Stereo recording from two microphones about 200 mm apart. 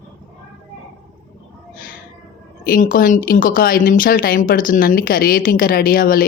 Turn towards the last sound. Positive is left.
turn(degrees=45)  # may be behind; listen again after turning